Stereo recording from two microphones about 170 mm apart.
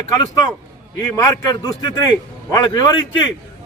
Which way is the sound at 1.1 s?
20° left (ahead or behind).